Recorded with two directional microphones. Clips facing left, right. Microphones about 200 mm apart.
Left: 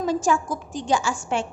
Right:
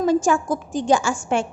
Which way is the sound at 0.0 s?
50° right (ahead or behind).